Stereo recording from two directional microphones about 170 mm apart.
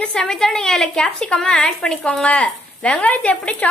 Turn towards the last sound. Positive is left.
turn(degrees=5)  # may be behind; listen again after turning